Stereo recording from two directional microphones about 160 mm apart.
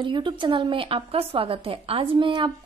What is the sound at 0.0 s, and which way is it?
A woman's voice, 30° right (ahead or behind).